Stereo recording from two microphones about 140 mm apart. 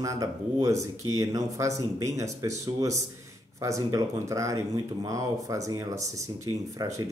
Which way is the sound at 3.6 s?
25° right (ahead or behind).